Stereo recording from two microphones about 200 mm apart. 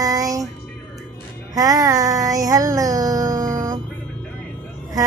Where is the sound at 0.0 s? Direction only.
15° right (ahead or behind).